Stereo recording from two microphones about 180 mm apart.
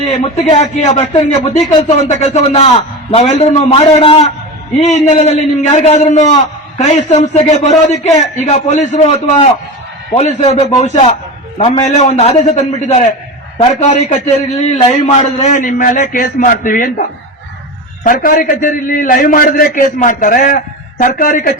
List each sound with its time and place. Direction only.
0.1 s a man's voice: 35° left (ahead or behind)